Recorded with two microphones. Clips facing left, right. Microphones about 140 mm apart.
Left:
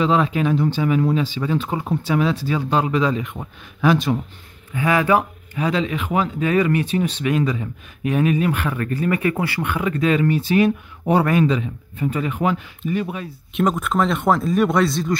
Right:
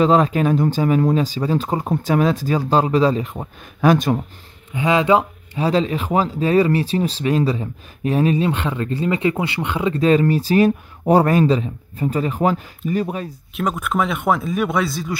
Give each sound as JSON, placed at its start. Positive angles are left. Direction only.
{"t": 0.0, "sound": "speech", "side_deg": -40}
{"t": 4.7, "sound": "speech", "side_deg": -20}
{"t": 13.6, "sound": "speech", "side_deg": 0}